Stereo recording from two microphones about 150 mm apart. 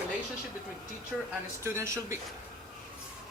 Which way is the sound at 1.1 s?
5° right (ahead or behind).